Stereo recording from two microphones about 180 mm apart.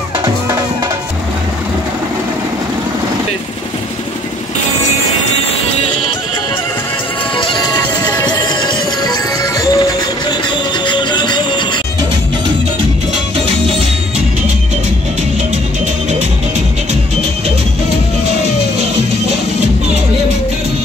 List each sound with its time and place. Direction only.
7.3 s music: 25° left (ahead or behind)
13.5 s music: 30° right (ahead or behind)